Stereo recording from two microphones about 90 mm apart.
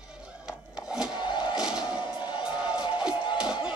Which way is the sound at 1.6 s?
10° right (ahead or behind).